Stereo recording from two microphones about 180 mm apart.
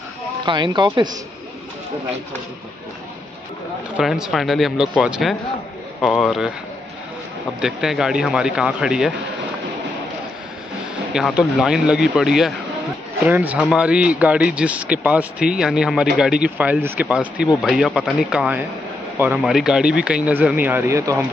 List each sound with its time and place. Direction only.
0.5 s speech: 25° right (ahead or behind)
3.9 s speech: centre (ahead or behind)
7.6 s speech: 5° right (ahead or behind)
11.1 s speech: 5° right (ahead or behind)